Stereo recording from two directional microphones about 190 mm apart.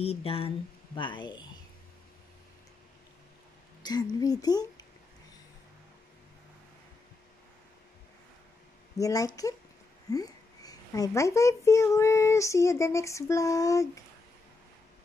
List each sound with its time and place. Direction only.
0.0 s a woman's voice: 30° left (ahead or behind)
3.8 s a woman's voice: 20° left (ahead or behind)
8.9 s a woman's voice: 20° left (ahead or behind)